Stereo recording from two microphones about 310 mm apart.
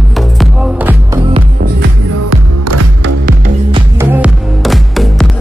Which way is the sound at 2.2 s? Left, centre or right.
Right.